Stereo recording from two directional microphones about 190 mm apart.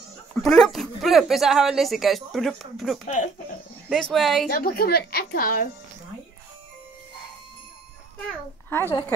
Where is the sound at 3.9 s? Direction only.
Centre (ahead or behind).